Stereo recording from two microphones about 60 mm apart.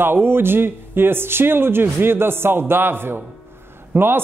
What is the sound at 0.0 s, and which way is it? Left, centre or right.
A man's voice, right.